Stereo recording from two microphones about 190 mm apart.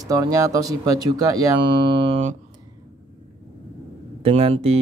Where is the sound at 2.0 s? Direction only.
35° right (ahead or behind).